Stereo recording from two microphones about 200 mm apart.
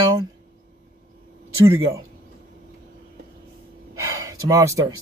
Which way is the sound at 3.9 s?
15° right (ahead or behind).